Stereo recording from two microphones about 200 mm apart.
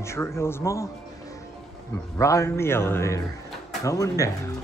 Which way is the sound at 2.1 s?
15° left (ahead or behind).